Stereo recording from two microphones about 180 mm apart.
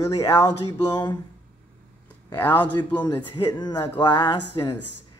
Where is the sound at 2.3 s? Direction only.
10° left (ahead or behind).